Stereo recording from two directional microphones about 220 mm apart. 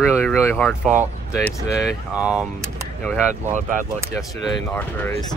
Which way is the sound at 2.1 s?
5° right (ahead or behind).